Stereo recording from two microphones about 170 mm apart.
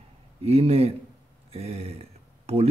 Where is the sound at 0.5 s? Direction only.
35° right (ahead or behind).